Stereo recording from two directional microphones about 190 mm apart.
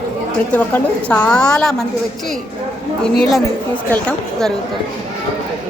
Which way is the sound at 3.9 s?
5° left (ahead or behind).